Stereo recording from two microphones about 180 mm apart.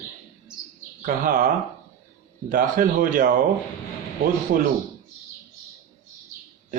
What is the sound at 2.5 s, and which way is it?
Speech, 50° right (ahead or behind).